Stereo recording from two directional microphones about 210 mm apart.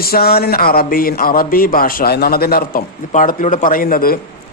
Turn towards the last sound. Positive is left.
turn(degrees=45)  # may be behind; listen again after turning